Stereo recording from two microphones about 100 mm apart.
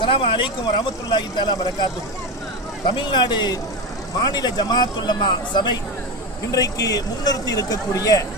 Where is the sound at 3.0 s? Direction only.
50° left (ahead or behind).